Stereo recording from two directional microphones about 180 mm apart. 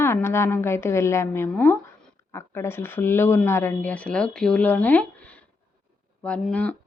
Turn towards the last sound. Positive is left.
turn(degrees=5)  # may be behind; listen again after turning